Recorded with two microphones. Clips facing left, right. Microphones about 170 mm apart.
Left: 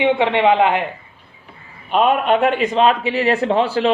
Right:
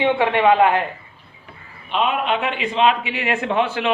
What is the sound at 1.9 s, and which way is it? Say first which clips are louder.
Speech: left 5 dB; 45° left (ahead or behind).